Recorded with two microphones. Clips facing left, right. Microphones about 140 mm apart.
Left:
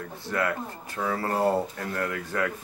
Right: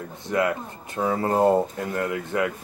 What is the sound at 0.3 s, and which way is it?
Speech, 20° right (ahead or behind).